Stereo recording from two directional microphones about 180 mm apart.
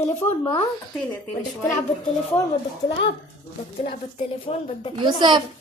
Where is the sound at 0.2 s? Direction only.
20° left (ahead or behind).